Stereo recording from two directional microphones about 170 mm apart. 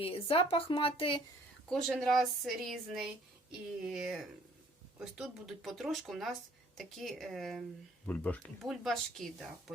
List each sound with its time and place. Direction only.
0.0 s speech: 35° left (ahead or behind)
1.7 s a woman's voice: centre (ahead or behind)